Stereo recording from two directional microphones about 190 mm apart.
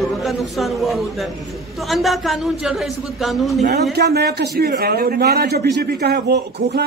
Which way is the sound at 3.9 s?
55° right (ahead or behind).